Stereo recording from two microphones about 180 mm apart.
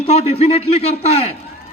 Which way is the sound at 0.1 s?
35° left (ahead or behind).